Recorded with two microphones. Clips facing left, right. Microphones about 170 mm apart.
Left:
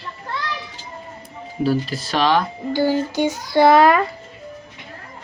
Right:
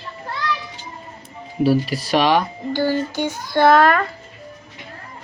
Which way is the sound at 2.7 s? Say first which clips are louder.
Left 1 dB; 10° left (ahead or behind).